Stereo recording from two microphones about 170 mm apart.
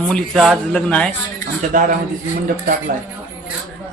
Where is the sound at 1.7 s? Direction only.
50° right (ahead or behind).